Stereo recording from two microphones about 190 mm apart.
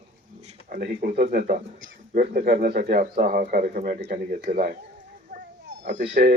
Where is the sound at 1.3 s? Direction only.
45° right (ahead or behind).